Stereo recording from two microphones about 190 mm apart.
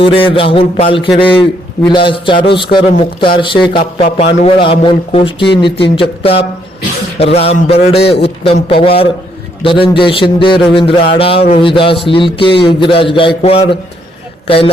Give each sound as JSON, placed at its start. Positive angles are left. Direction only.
{"t": 0.0, "sound": "a man's voice", "side_deg": 30}